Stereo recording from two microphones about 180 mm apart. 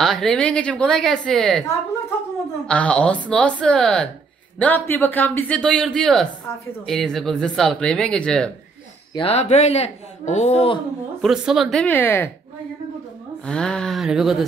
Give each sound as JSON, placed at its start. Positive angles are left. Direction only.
{"t": 0.0, "sound": "speech", "side_deg": 0}
{"t": 2.6, "sound": "a man's voice", "side_deg": 5}
{"t": 9.1, "sound": "speech", "side_deg": 30}
{"t": 11.1, "sound": "speech", "side_deg": 0}
{"t": 13.5, "sound": "speech", "side_deg": 5}